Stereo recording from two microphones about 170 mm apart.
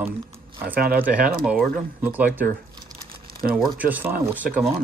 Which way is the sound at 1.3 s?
5° right (ahead or behind).